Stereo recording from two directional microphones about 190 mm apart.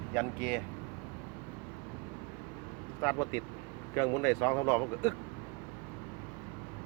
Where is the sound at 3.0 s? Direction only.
20° left (ahead or behind).